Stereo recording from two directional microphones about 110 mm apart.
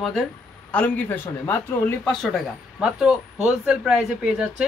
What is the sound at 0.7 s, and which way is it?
Speech, 15° left (ahead or behind).